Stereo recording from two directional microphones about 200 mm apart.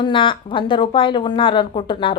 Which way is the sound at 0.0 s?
25° left (ahead or behind).